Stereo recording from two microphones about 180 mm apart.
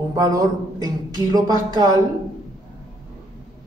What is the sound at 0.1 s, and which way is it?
A man's voice, 20° right (ahead or behind).